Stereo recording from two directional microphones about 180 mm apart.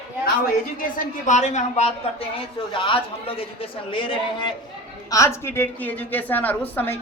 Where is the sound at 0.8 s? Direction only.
45° left (ahead or behind).